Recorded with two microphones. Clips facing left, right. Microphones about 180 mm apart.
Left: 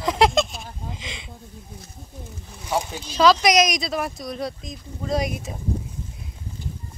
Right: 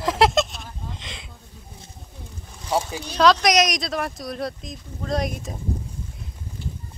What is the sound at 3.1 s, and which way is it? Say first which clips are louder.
Speech: left 1 dB; centre (ahead or behind).